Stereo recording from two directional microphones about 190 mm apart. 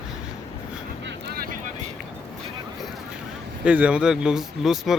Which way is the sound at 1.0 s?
55° right (ahead or behind).